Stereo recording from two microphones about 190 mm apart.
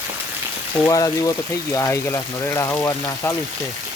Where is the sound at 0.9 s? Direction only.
20° left (ahead or behind).